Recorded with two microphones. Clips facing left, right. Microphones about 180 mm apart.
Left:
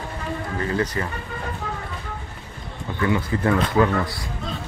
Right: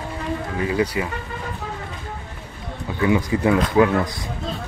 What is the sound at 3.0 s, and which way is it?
Speech, 15° right (ahead or behind).